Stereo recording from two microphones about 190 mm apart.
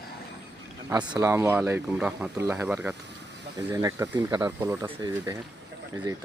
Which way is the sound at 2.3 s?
15° right (ahead or behind).